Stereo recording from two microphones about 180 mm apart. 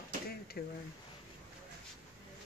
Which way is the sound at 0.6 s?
55° left (ahead or behind).